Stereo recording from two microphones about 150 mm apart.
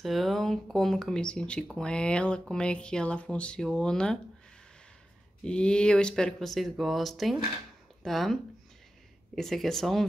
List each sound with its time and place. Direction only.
0.0 s speech: centre (ahead or behind)
5.4 s speech: 5° left (ahead or behind)